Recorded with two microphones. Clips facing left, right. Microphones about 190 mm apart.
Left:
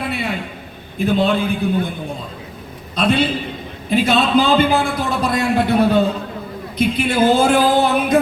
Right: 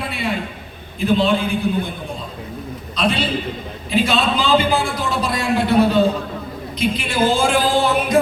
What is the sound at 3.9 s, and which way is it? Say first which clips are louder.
A man's voice: left 3 dB; 55° left (ahead or behind).